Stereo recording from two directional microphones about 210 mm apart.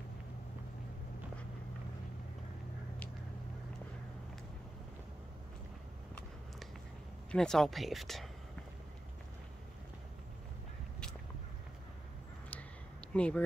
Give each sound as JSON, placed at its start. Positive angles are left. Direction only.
{"t": 7.2, "sound": "speech", "side_deg": 5}
{"t": 13.1, "sound": "speech", "side_deg": 5}